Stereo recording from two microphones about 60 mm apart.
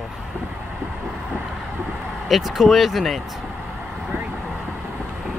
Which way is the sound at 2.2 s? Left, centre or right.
Centre.